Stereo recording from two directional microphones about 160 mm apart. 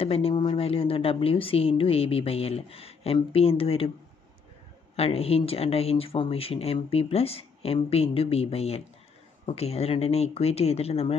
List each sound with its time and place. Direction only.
0.0 s speech: 35° left (ahead or behind)
4.9 s speech: 40° left (ahead or behind)